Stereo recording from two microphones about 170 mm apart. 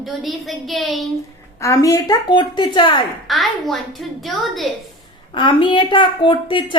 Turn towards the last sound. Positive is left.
turn(degrees=30)  # may be behind; listen again after turning